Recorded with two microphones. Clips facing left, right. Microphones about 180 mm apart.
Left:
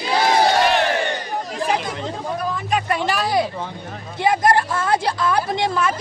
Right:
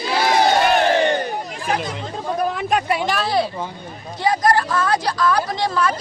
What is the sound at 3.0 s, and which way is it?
A woman's voice, 15° left (ahead or behind).